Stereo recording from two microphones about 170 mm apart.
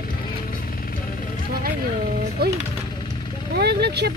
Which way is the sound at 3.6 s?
75° right (ahead or behind).